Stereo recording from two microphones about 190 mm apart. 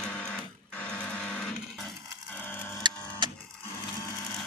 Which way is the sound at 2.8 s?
25° right (ahead or behind).